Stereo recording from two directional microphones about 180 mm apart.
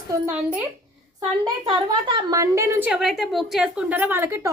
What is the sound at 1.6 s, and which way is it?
A woman's voice, 25° right (ahead or behind).